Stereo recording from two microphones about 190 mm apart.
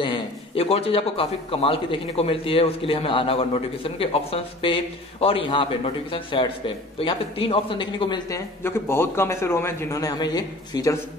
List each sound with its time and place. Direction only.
0.0 s a man's voice: 30° left (ahead or behind)
8.6 s a man's voice: 15° left (ahead or behind)